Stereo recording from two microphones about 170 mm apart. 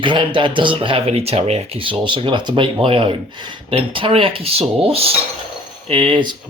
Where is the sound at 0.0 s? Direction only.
30° right (ahead or behind).